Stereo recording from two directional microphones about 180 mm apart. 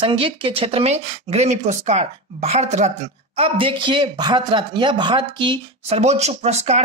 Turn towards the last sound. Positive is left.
turn(degrees=-35)  # may be behind; listen again after turning